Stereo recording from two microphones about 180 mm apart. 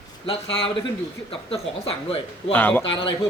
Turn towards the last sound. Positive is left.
turn(degrees=30)  # may be behind; listen again after turning